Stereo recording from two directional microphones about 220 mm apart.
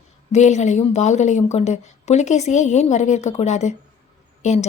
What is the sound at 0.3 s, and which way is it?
A woman's voice, 30° left (ahead or behind).